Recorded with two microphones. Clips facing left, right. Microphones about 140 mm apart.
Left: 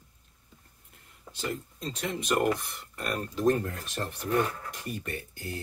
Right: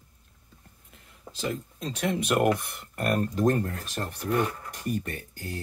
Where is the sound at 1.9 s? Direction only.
70° right (ahead or behind); by 3.5 s 50° right (ahead or behind).